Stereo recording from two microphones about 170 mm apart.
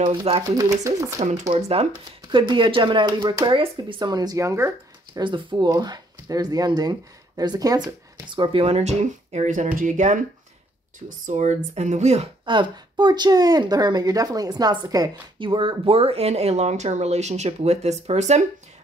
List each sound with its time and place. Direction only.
0.1 s speech: 30° right (ahead or behind)
0.5 s speech: 20° right (ahead or behind)
1.2 s speech: 45° right (ahead or behind)
1.5 s speech: 30° right (ahead or behind)
12.4 s speech: 30° right (ahead or behind)